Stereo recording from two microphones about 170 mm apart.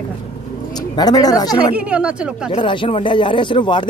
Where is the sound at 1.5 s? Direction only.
5° right (ahead or behind).